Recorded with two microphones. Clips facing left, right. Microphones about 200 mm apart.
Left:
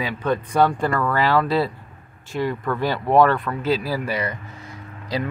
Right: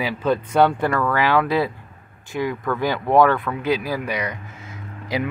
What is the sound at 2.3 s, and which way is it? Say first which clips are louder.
Speech: even; 5° right (ahead or behind).